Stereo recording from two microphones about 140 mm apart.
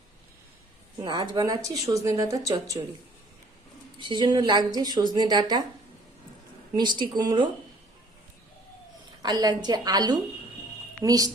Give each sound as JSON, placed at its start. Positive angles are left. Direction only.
{"t": 1.0, "sound": "speech", "side_deg": -30}
{"t": 3.9, "sound": "a woman's voice", "side_deg": -35}
{"t": 6.7, "sound": "a woman's voice", "side_deg": -30}
{"t": 9.2, "sound": "speech", "side_deg": -30}